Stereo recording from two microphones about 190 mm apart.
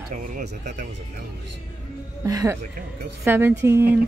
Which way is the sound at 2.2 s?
15° right (ahead or behind).